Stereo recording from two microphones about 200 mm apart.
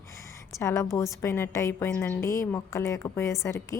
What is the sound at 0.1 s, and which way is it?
A woman's voice, 15° left (ahead or behind).